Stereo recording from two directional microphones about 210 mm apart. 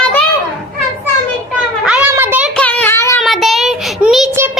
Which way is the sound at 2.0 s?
10° right (ahead or behind).